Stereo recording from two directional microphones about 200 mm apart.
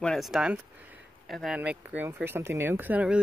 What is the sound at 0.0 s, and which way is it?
Speech, centre (ahead or behind).